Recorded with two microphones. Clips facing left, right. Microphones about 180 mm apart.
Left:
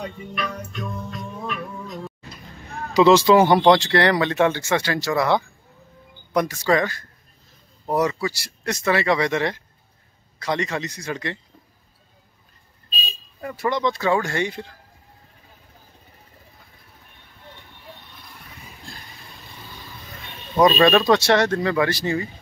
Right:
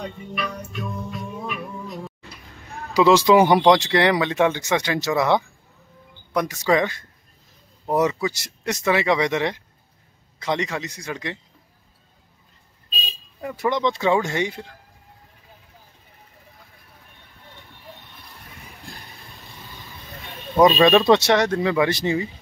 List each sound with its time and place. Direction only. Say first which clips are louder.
0.0 s music: even; 5° right (ahead or behind)
2.9 s speech: left 1 dB; 10° right (ahead or behind)
6.4 s speech: right 2 dB; 15° right (ahead or behind)
13.4 s speech: right 1 dB; 15° right (ahead or behind)
20.5 s speech: right 1 dB; centre (ahead or behind)
21.0 s speech: right 1 dB; 20° right (ahead or behind)